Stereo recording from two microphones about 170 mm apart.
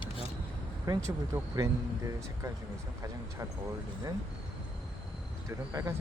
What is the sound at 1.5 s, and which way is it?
Speech, 20° right (ahead or behind).